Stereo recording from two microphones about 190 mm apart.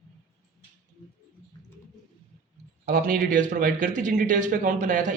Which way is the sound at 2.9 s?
45° right (ahead or behind).